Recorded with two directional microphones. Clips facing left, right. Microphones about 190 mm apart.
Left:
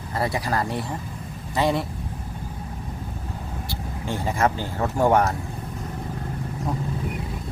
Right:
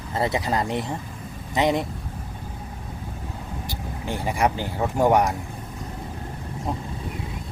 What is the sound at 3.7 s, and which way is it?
Speech, 15° right (ahead or behind).